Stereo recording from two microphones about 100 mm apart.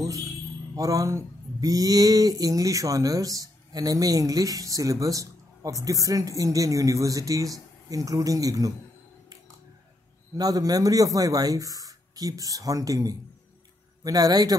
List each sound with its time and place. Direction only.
0.0 s a sound: 35° right (ahead or behind)
0.7 s speech: 35° right (ahead or behind)
10.3 s speech: 40° right (ahead or behind)